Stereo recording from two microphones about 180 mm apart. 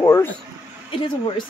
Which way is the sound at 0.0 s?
20° left (ahead or behind).